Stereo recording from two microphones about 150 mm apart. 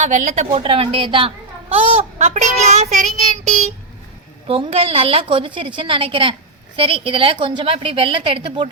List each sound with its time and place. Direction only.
0.0 s child singing: 55° right (ahead or behind)
0.6 s a woman's voice: 40° right (ahead or behind)
1.7 s child singing: 40° right (ahead or behind)
4.4 s a woman's voice: 40° right (ahead or behind)